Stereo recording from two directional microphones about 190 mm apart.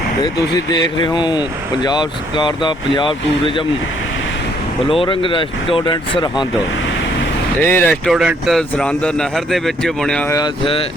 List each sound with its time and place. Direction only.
0.2 s speech: 20° left (ahead or behind)
4.9 s speech: 25° left (ahead or behind)
7.7 s speech: 10° left (ahead or behind)
8.1 s a man's voice: 5° right (ahead or behind)
10.2 s speech: 15° left (ahead or behind)